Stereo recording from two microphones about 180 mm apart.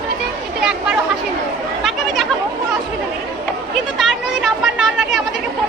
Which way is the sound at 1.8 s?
Centre (ahead or behind).